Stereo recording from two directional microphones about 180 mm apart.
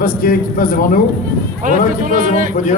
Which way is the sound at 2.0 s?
45° right (ahead or behind).